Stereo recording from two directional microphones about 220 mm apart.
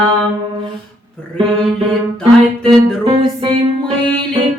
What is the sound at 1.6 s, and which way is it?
Music, centre (ahead or behind).